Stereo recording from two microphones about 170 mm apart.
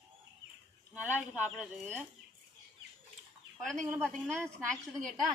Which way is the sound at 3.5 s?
5° left (ahead or behind).